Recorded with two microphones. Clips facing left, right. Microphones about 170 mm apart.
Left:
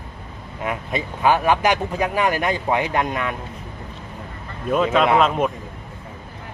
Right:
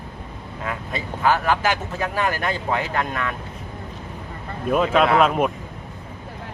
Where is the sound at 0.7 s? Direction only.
20° left (ahead or behind).